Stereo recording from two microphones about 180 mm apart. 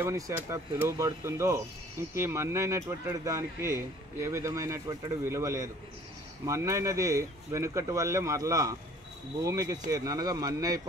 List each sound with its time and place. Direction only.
0.0 s speech: 15° right (ahead or behind)